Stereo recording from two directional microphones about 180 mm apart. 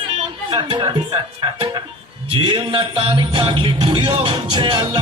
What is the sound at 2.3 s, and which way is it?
Music, 25° right (ahead or behind).